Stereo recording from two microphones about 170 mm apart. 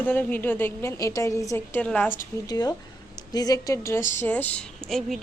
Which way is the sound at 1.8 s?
5° left (ahead or behind).